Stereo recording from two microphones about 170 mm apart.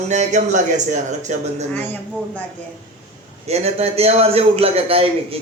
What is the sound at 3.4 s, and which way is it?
A man's voice, 40° right (ahead or behind).